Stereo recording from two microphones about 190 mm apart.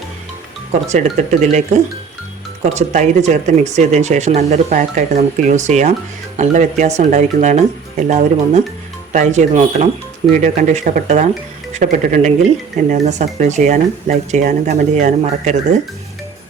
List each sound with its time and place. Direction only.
0.7 s speech: 35° right (ahead or behind)